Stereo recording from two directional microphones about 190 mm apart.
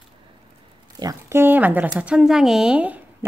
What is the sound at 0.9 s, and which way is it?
Speech, 15° right (ahead or behind).